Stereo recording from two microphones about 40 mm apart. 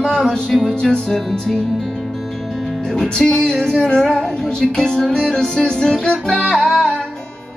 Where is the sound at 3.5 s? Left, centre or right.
Centre.